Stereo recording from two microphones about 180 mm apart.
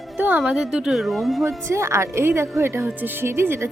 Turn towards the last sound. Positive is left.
turn(degrees=-15)  # may be behind; listen again after turning